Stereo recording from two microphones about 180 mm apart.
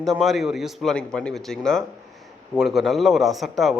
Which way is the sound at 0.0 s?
Centre (ahead or behind).